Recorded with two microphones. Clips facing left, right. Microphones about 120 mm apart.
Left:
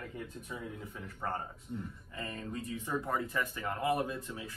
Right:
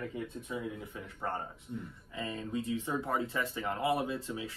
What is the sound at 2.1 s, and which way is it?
Speech, 20° right (ahead or behind).